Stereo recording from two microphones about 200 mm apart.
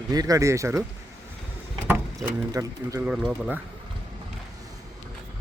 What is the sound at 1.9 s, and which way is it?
Speech, 15° right (ahead or behind).